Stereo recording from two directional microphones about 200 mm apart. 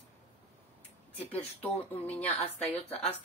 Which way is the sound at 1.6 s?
10° left (ahead or behind).